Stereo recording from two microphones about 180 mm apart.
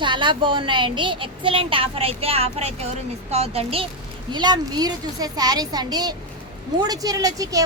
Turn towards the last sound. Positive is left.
turn(degrees=-20)  # may be behind; listen again after turning